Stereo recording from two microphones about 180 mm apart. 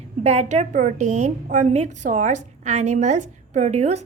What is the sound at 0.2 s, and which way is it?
A woman's voice, 40° right (ahead or behind).